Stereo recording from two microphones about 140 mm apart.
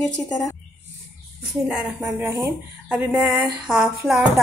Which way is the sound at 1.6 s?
10° right (ahead or behind).